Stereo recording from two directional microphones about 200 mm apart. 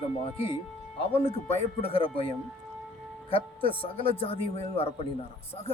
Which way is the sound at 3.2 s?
25° left (ahead or behind).